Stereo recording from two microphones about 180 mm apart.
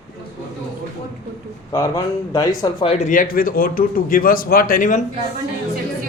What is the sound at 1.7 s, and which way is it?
Speech, 20° left (ahead or behind).